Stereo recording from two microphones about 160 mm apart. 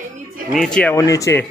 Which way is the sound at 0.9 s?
20° left (ahead or behind).